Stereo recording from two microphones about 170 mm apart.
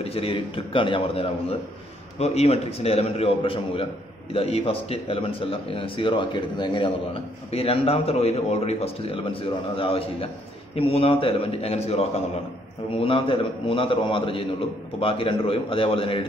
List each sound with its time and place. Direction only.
0.0 s speech: 35° left (ahead or behind)